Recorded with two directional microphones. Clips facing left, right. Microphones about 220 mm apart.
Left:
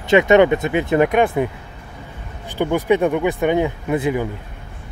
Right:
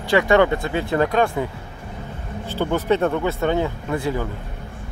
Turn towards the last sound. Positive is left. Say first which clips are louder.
# left 4 dB
turn(degrees=15)  # may be behind; listen again after turning